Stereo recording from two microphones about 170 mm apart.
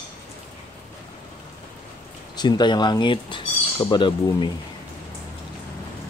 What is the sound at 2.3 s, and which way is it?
Speech, 25° left (ahead or behind).